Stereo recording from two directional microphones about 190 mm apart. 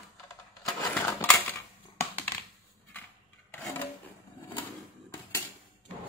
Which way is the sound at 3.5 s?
10° left (ahead or behind).